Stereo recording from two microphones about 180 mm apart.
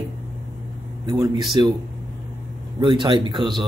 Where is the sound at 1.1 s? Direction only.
20° right (ahead or behind).